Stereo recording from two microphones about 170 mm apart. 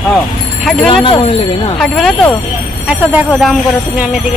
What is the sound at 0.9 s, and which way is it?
Speech, 30° left (ahead or behind).